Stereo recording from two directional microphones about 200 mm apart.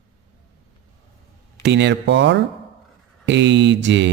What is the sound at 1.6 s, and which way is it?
Speech, 60° right (ahead or behind).